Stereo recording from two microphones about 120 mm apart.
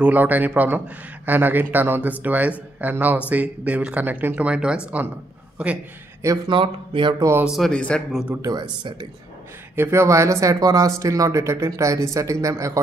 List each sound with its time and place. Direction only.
0.0 s a man's voice: 15° right (ahead or behind)
6.2 s speech: 30° right (ahead or behind)
6.5 s speech: 45° right (ahead or behind)
7.2 s speech: 25° right (ahead or behind)
7.4 s speech: centre (ahead or behind)
8.4 s speech: 35° right (ahead or behind)
9.8 s speech: 20° right (ahead or behind)